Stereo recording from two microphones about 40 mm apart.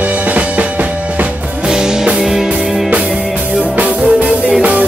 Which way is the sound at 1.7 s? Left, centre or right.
Centre.